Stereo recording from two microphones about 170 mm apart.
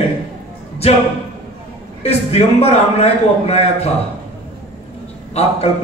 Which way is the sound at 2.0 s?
40° left (ahead or behind).